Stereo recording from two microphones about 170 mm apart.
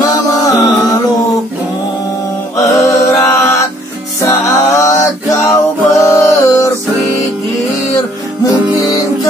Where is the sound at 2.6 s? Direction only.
15° left (ahead or behind).